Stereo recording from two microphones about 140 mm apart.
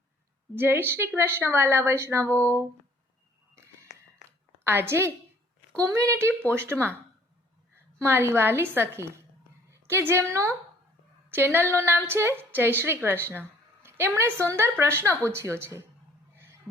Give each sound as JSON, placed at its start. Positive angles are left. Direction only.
{"t": 0.5, "sound": "a woman's voice", "side_deg": -15}
{"t": 3.5, "sound": "a sound", "side_deg": -20}
{"t": 4.6, "sound": "a woman's voice", "side_deg": -15}
{"t": 8.0, "sound": "a woman's voice", "side_deg": -15}